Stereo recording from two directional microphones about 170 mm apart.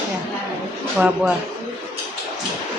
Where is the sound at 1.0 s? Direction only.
5° right (ahead or behind).